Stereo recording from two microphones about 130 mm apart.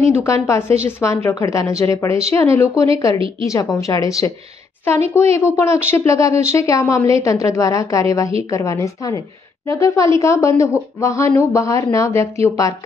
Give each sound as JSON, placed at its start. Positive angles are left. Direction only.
{"t": 0.2, "sound": "a woman's voice", "side_deg": 20}